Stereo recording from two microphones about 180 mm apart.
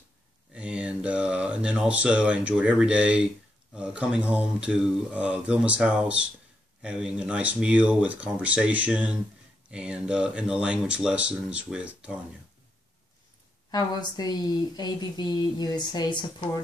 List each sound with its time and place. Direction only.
0.6 s mantra: 5° right (ahead or behind)
3.7 s speech: 5° right (ahead or behind)
13.7 s a woman's voice: 20° left (ahead or behind)